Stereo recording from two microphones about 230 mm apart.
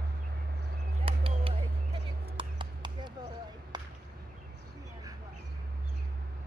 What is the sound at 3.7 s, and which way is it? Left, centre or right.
Whip, centre.